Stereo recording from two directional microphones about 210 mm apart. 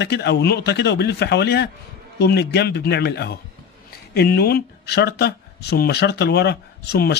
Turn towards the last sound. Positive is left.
turn(degrees=50)  # may be behind; listen again after turning